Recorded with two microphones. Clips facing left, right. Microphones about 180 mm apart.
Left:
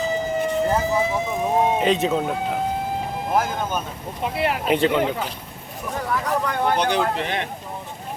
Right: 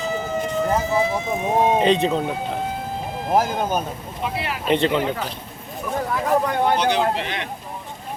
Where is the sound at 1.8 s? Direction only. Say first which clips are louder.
Right 2 dB; 5° left (ahead or behind).